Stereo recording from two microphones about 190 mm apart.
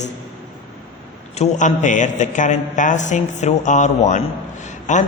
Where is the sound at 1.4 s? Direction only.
40° left (ahead or behind).